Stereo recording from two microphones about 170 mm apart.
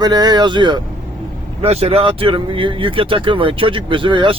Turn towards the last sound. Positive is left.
turn(degrees=-30)  # may be behind; listen again after turning